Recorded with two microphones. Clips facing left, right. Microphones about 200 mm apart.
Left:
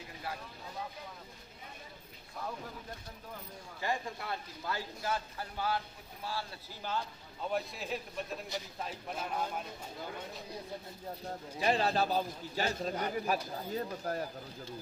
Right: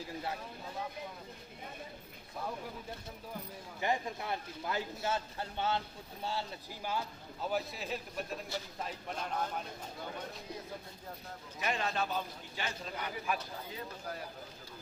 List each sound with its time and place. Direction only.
3.8 s a man's voice: 20° right (ahead or behind)
6.8 s a man's voice: 10° right (ahead or behind); by 9.6 s 5° left (ahead or behind)
11.5 s a man's voice: 35° left (ahead or behind)